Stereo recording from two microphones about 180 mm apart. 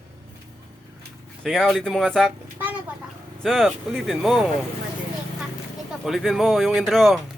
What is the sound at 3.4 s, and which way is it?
Speech, centre (ahead or behind).